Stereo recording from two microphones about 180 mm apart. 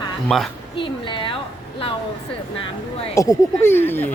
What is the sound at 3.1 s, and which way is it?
Speech, 15° left (ahead or behind).